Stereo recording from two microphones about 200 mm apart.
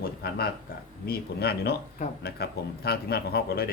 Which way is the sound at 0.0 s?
50° left (ahead or behind).